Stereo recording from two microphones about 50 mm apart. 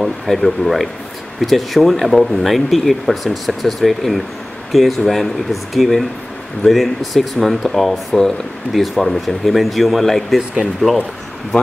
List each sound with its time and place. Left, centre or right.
0.0 s speech: centre